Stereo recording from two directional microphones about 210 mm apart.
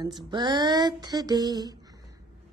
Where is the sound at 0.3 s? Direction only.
20° right (ahead or behind).